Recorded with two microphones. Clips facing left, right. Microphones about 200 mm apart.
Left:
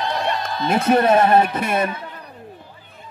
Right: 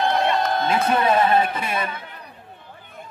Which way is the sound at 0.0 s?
55° right (ahead or behind).